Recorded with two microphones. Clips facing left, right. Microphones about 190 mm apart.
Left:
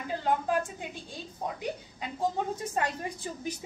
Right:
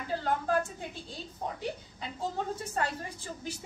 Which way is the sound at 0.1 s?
15° left (ahead or behind).